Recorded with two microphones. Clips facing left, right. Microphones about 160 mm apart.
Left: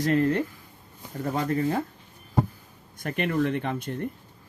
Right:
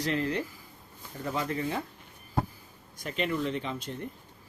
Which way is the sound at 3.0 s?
55° left (ahead or behind).